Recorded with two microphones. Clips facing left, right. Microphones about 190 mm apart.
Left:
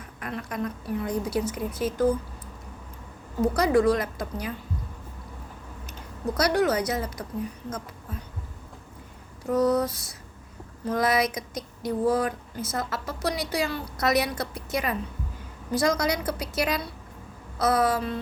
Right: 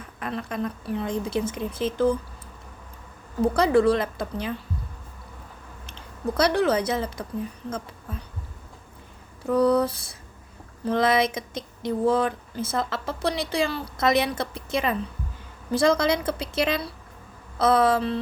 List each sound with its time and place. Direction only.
0.2 s speech: 30° right (ahead or behind)
3.4 s speech: 30° right (ahead or behind)
6.3 s speech: 30° right (ahead or behind)
9.5 s a sound: 60° right (ahead or behind)
10.8 s speech: 25° right (ahead or behind)